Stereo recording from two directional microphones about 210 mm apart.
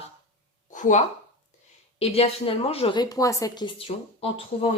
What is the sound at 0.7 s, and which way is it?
Speech, 35° left (ahead or behind).